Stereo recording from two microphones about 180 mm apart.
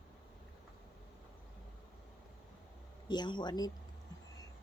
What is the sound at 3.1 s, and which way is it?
Speech, 25° left (ahead or behind).